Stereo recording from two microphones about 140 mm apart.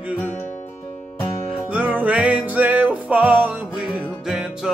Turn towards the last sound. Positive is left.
turn(degrees=0)  # may be behind; listen again after turning